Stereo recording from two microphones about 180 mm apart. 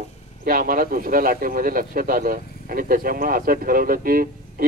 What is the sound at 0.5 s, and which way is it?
Speech, 50° right (ahead or behind).